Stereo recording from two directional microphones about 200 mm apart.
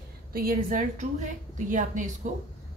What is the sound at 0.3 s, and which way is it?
A woman's voice, 45° right (ahead or behind).